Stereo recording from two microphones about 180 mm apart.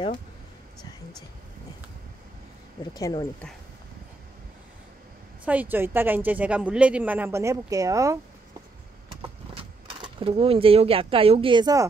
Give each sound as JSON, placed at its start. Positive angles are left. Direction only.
{"t": 2.9, "sound": "speech", "side_deg": 20}
{"t": 5.4, "sound": "a woman's voice", "side_deg": -10}
{"t": 9.6, "sound": "speech", "side_deg": -25}